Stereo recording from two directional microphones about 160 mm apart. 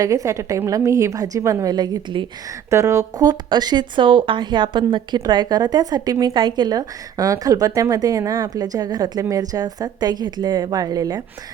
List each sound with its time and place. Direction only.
0.0 s a woman's voice: 20° right (ahead or behind)